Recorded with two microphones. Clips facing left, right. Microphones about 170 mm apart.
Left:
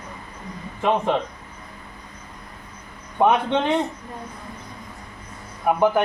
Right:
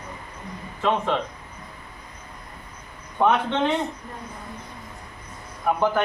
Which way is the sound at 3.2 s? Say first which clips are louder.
Left 2 dB; 15° left (ahead or behind).